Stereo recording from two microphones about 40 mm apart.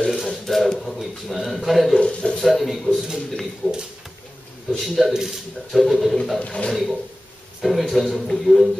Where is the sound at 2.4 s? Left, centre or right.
Centre.